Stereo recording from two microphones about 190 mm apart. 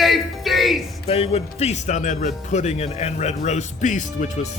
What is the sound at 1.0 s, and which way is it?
Speech, 30° left (ahead or behind).